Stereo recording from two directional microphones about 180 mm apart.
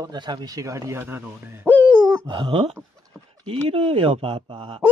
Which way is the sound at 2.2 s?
25° right (ahead or behind).